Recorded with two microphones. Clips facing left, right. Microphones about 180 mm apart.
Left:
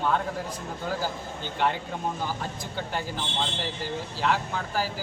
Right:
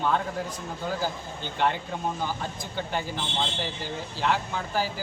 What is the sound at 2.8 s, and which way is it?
A man's voice, centre (ahead or behind).